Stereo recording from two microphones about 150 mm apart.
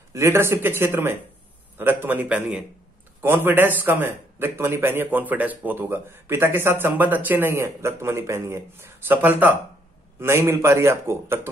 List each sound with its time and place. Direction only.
0.1 s a man's voice: 20° right (ahead or behind)